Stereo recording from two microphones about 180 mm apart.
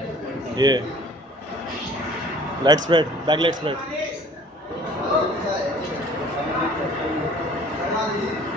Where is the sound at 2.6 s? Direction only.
25° right (ahead or behind).